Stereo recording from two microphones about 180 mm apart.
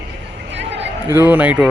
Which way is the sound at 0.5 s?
80° right.